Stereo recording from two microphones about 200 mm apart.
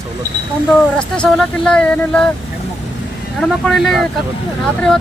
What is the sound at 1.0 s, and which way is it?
Speech, 5° left (ahead or behind).